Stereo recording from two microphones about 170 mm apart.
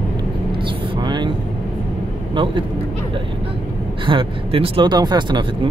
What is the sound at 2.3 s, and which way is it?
Speech, 30° right (ahead or behind).